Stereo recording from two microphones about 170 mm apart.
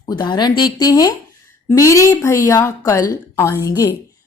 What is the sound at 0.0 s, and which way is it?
A woman's voice, 25° left (ahead or behind).